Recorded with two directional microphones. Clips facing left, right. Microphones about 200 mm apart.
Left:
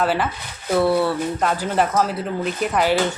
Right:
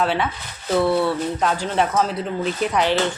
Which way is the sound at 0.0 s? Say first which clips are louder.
Left 1 dB; 5° left (ahead or behind).